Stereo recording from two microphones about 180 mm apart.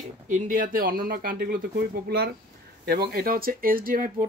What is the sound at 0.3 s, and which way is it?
A man's voice, 50° right (ahead or behind).